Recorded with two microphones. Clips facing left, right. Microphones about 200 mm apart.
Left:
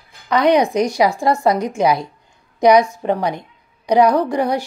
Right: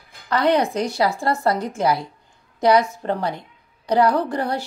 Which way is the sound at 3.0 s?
15° left (ahead or behind).